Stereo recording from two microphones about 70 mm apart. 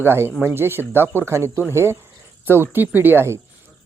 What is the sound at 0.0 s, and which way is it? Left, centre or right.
Speech, right.